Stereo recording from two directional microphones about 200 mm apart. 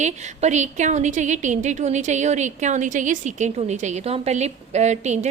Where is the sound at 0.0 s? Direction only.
35° right (ahead or behind).